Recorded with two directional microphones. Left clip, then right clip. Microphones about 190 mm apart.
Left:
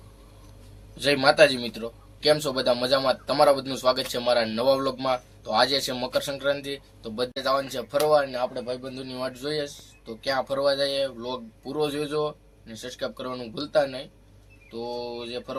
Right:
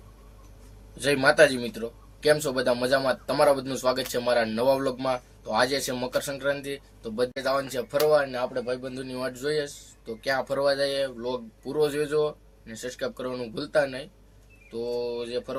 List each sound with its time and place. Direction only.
0.9 s speech: 10° right (ahead or behind)
14.8 s speech: 35° right (ahead or behind)
15.1 s speech: 10° right (ahead or behind)